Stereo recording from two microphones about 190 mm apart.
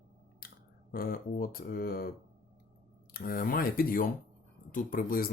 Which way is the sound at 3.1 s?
50° left (ahead or behind).